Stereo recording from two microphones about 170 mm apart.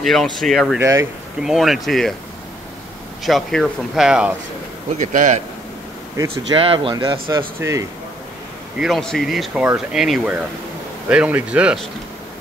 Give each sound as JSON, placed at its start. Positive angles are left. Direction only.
{"t": 0.0, "sound": "speech", "side_deg": 0}
{"t": 0.7, "sound": "speech", "side_deg": -20}
{"t": 1.4, "sound": "speech", "side_deg": 0}
{"t": 3.3, "sound": "speech", "side_deg": 0}
{"t": 4.9, "sound": "speech", "side_deg": -45}
{"t": 6.1, "sound": "speech", "side_deg": -20}
{"t": 6.6, "sound": "speech", "side_deg": -30}
{"t": 7.2, "sound": "speech", "side_deg": -15}
{"t": 8.7, "sound": "speech", "side_deg": 0}